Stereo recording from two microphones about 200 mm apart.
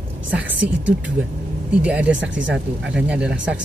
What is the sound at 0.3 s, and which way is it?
Speech, 10° right (ahead or behind).